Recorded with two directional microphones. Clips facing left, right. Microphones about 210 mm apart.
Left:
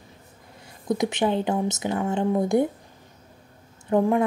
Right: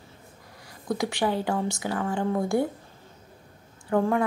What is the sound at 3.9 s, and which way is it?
Speech, 15° left (ahead or behind).